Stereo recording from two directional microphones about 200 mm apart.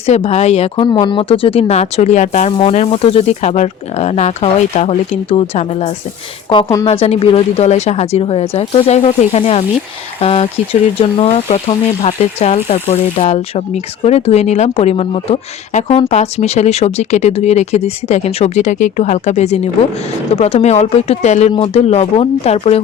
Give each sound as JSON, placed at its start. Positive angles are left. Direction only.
{"t": 0.0, "sound": "a woman's voice", "side_deg": 30}
{"t": 6.8, "sound": "speech", "side_deg": 30}